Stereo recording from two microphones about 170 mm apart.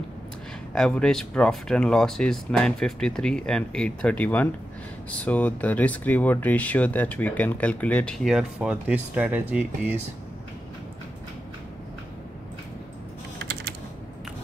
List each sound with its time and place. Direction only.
0.7 s speech: 5° left (ahead or behind)
13.4 s typing: 70° right (ahead or behind)